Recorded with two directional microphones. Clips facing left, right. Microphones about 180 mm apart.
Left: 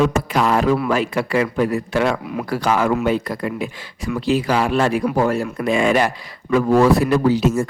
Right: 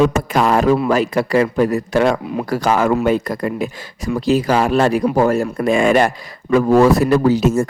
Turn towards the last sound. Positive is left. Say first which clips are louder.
# right 2 dB
turn(degrees=-45)  # may be behind; listen again after turning